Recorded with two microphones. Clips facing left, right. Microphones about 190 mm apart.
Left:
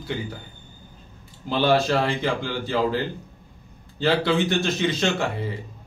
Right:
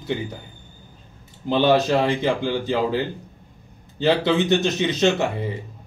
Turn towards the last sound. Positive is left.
turn(degrees=-20)  # may be behind; listen again after turning